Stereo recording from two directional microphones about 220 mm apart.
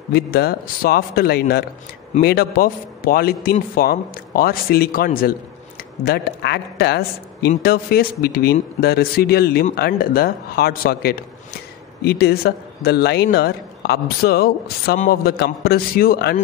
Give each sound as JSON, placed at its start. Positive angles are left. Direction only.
{"t": 0.1, "sound": "a man's voice", "side_deg": 45}